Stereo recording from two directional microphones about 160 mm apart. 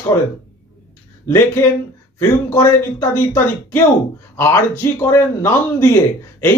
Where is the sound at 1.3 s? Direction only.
15° left (ahead or behind).